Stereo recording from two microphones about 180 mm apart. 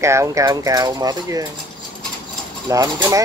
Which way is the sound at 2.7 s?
20° right (ahead or behind).